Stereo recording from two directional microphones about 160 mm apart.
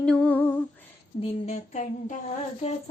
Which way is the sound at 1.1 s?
45° left (ahead or behind).